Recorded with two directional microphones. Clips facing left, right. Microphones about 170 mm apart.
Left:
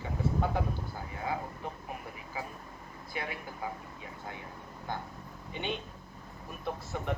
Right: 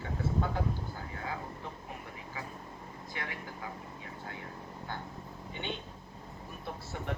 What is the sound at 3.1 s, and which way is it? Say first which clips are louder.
Speech: left 4 dB; 15° left (ahead or behind).